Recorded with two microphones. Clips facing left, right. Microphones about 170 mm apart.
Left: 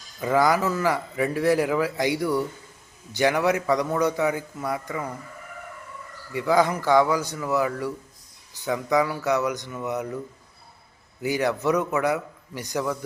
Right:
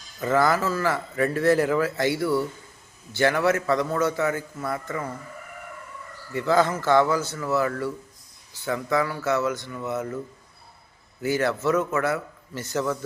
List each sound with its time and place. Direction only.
0.2 s a man's voice: 15° left (ahead or behind)
6.3 s a man's voice: 10° left (ahead or behind)
11.2 s a man's voice: 15° left (ahead or behind)